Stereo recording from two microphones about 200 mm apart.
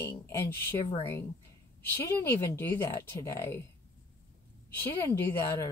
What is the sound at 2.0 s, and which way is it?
A woman's voice, 15° left (ahead or behind).